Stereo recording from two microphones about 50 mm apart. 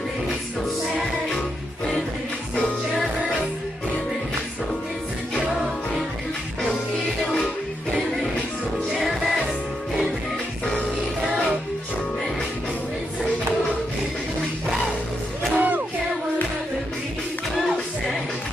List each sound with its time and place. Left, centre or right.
15.5 s music: right